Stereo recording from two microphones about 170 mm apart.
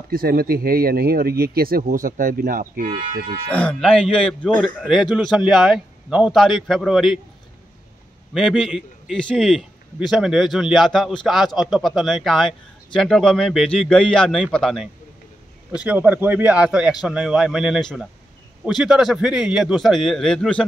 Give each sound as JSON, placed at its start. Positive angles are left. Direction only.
{"t": 0.1, "sound": "speech", "side_deg": -60}
{"t": 3.4, "sound": "speech", "side_deg": 5}
{"t": 8.3, "sound": "speech", "side_deg": 0}